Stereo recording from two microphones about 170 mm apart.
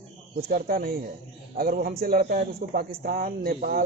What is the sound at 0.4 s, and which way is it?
A man's voice, 60° right (ahead or behind).